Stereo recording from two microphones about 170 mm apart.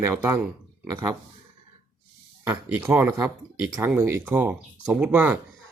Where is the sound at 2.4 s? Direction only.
10° right (ahead or behind).